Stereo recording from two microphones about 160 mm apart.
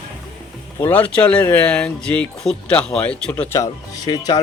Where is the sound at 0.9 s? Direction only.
10° left (ahead or behind).